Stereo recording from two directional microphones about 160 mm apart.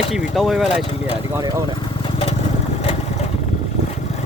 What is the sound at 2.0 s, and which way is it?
Lawn mower, 35° left (ahead or behind).